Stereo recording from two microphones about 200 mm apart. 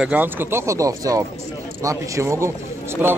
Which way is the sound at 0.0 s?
10° right (ahead or behind).